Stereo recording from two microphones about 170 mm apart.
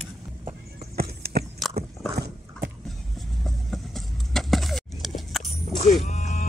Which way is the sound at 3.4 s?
Centre (ahead or behind).